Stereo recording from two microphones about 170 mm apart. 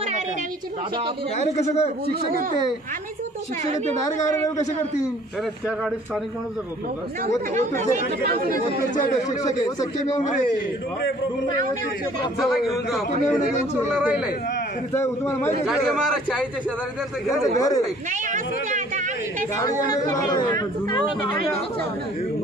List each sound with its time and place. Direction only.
1.6 s a man's voice: 40° left (ahead or behind)
7.2 s speech: 45° right (ahead or behind)
9.4 s speech: 20° left (ahead or behind)
12.4 s a man's voice: centre (ahead or behind)
13.8 s speech: 10° right (ahead or behind)
14.9 s a man's voice: 15° left (ahead or behind)
17.6 s speech: 20° left (ahead or behind)
19.5 s speech: 20° left (ahead or behind)